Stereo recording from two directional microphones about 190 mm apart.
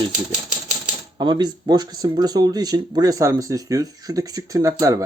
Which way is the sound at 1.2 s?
25° right (ahead or behind).